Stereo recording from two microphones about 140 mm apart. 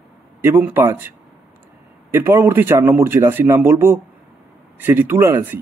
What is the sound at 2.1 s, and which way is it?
A man's voice, 15° right (ahead or behind).